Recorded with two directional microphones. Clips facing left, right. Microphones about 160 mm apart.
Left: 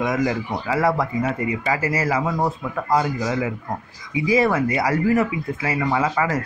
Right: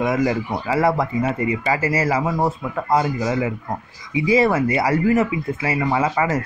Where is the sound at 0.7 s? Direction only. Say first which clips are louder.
Right 2 dB; 25° right (ahead or behind).